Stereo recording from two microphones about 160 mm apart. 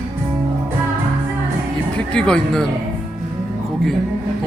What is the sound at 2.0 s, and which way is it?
Speech, 5° left (ahead or behind).